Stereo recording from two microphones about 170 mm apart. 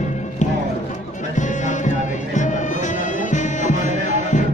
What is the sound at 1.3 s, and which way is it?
Music, 45° left (ahead or behind).